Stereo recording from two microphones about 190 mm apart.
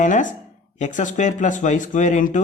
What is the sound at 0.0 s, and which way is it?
Speech, 40° left (ahead or behind).